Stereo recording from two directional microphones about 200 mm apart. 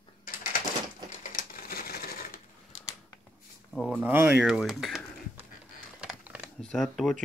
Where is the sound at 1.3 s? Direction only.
45° left (ahead or behind).